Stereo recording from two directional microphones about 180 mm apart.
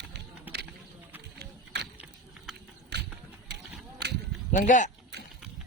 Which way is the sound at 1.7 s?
70° right (ahead or behind).